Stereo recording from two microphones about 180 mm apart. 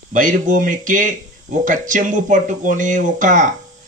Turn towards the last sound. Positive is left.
turn(degrees=-45)  # may be behind; listen again after turning